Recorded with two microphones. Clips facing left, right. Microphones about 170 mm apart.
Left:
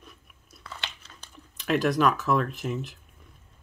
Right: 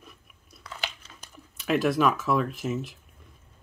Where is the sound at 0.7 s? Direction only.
5° right (ahead or behind).